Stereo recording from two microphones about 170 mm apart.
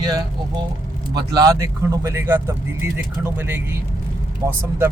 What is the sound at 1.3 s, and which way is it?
Speech, 20° right (ahead or behind).